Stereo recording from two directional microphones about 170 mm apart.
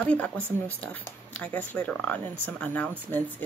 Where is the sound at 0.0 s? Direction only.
10° left (ahead or behind).